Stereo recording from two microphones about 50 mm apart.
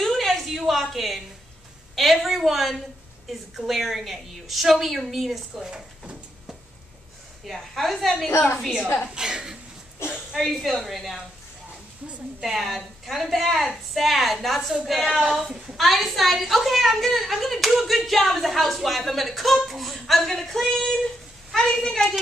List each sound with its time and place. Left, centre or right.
0.0 s a sound: centre
2.0 s a woman's voice: centre
5.7 s a sound: centre
7.4 s a woman's voice: centre
8.8 s a woman's voice: left
9.1 s a woman's voice: centre
10.0 s speech: left
10.3 s a woman's voice: centre
12.4 s a woman's voice: centre